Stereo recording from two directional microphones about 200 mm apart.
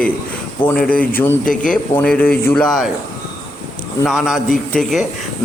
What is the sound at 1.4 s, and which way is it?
Speech, 40° left (ahead or behind).